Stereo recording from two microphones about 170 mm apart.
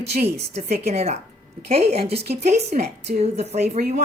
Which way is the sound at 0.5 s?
40° right (ahead or behind).